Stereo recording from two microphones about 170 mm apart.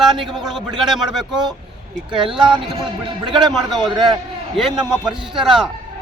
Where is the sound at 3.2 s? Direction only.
30° right (ahead or behind).